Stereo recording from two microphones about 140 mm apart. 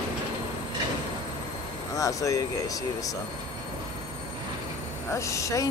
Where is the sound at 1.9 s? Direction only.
25° left (ahead or behind).